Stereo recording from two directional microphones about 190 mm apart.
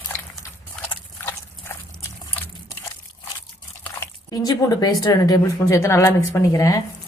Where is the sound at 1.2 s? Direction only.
15° left (ahead or behind).